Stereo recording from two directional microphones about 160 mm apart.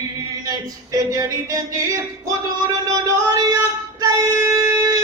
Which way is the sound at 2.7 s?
20° right (ahead or behind).